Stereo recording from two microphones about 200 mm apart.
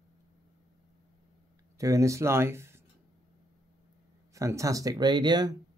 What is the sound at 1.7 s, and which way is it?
Speech, 15° right (ahead or behind).